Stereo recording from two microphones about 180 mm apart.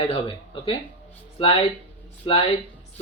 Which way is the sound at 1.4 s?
30° left (ahead or behind).